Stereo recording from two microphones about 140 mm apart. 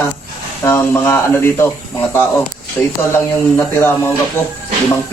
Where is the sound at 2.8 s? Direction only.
15° left (ahead or behind).